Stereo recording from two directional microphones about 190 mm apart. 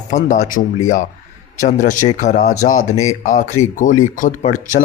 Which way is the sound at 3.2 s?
40° left (ahead or behind).